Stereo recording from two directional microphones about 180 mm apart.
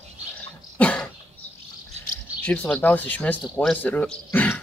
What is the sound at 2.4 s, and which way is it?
Speech, 5° left (ahead or behind).